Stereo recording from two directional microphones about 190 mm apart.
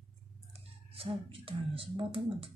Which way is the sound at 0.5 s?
30° right (ahead or behind).